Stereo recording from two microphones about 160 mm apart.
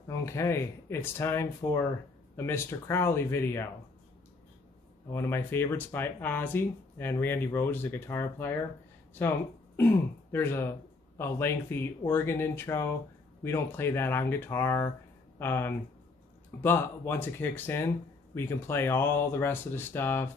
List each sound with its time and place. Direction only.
0.1 s speech: 15° left (ahead or behind)
5.1 s speech: 15° left (ahead or behind)
9.8 s speech: 15° left (ahead or behind)